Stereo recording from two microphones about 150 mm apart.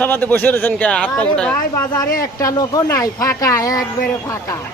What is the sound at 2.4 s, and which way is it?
Speech, 25° left (ahead or behind).